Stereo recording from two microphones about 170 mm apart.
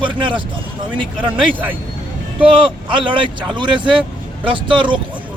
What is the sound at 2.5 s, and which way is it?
A man's voice, 30° right (ahead or behind).